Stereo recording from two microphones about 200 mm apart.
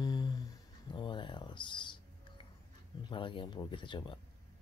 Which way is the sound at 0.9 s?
25° left (ahead or behind).